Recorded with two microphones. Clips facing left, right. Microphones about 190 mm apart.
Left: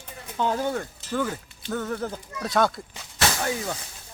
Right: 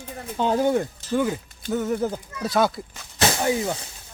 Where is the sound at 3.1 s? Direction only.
20° right (ahead or behind).